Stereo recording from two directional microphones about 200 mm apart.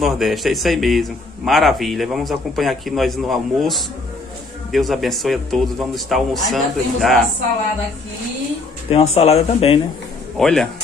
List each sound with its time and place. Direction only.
0.0 s a man's voice: centre (ahead or behind)
8.9 s speech: 30° left (ahead or behind)
10.3 s a man's voice: centre (ahead or behind)